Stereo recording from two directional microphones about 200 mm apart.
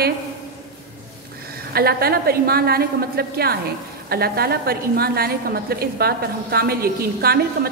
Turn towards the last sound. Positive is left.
turn(degrees=-50)  # may be behind; listen again after turning